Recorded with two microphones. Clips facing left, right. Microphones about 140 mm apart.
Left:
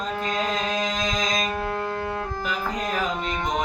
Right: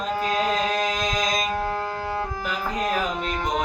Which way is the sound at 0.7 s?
5° right (ahead or behind).